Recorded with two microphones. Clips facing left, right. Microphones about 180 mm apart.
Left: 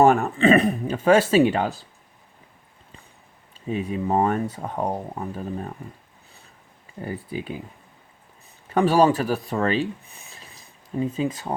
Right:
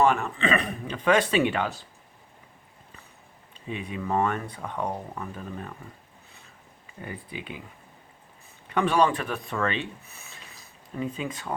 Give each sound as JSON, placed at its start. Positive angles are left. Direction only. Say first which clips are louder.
{"t": 0.0, "sound": "speech", "louder": "left 6 dB", "side_deg": 45}
{"t": 3.7, "sound": "speech", "louder": "left 6 dB", "side_deg": 40}
{"t": 7.0, "sound": "speech", "louder": "left 7 dB", "side_deg": 40}
{"t": 8.7, "sound": "speech", "louder": "left 5 dB", "side_deg": 40}